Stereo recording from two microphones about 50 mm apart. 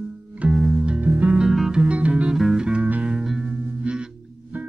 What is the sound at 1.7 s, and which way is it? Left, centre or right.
Music, right.